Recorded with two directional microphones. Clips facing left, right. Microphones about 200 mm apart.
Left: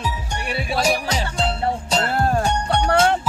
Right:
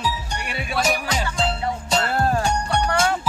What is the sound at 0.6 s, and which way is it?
Music, 35° left (ahead or behind).